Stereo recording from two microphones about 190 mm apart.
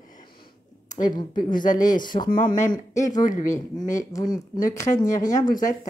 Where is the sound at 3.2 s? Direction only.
45° left (ahead or behind).